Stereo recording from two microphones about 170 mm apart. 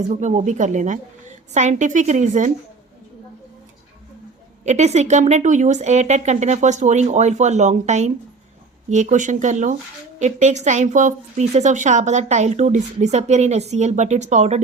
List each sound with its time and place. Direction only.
0.1 s a woman's voice: 45° right (ahead or behind)
4.6 s a woman's voice: 40° right (ahead or behind)